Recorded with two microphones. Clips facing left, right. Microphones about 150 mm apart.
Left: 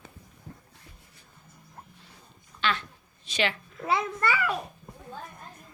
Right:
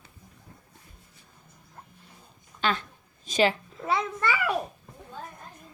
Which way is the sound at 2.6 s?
40° right (ahead or behind).